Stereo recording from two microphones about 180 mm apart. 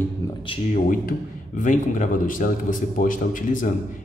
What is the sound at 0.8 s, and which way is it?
A man's voice, 50° left (ahead or behind).